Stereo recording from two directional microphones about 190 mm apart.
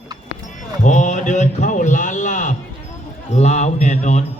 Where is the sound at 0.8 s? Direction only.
40° left (ahead or behind).